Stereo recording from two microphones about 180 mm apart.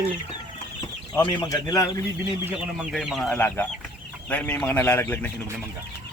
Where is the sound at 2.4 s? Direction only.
5° right (ahead or behind).